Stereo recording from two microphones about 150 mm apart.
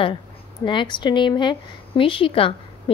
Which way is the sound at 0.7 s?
30° left (ahead or behind).